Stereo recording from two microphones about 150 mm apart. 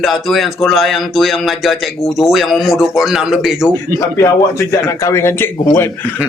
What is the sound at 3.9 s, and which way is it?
A man's voice, 20° left (ahead or behind).